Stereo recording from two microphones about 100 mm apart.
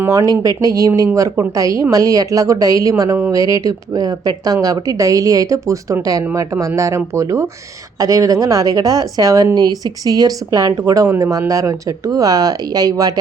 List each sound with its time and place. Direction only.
0.1 s a woman's voice: 35° right (ahead or behind)